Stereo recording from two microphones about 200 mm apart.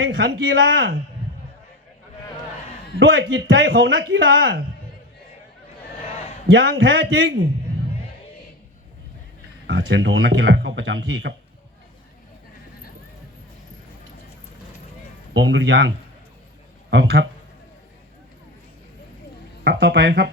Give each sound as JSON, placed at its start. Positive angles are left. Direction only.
{"t": 0.0, "sound": "speech", "side_deg": -70}
{"t": 3.0, "sound": "speech", "side_deg": -75}
{"t": 6.5, "sound": "speech", "side_deg": -75}
{"t": 9.6, "sound": "speech", "side_deg": -70}
{"t": 15.3, "sound": "speech", "side_deg": -70}
{"t": 16.9, "sound": "speech", "side_deg": -70}
{"t": 19.6, "sound": "speech", "side_deg": -60}